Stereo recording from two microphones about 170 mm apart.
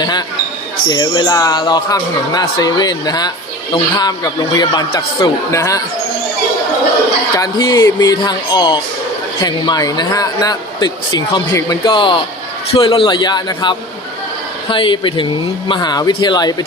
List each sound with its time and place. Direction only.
0.0 s speech: 25° left (ahead or behind)
7.3 s speech: 20° left (ahead or behind)